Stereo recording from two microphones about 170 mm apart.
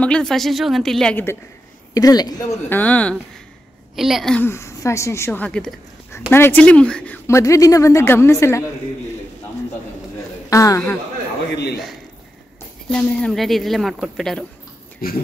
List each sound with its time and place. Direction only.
0.0 s a man's voice: 5° left (ahead or behind); by 2.4 s 20° left (ahead or behind)
2.7 s speech: 10° left (ahead or behind)
4.5 s speech: 15° left (ahead or behind)
10.5 s a man's voice: 20° left (ahead or behind)
11.5 s a man's voice: 70° left (ahead or behind)
12.9 s speech: 5° left (ahead or behind)
15.0 s speech: 60° left (ahead or behind)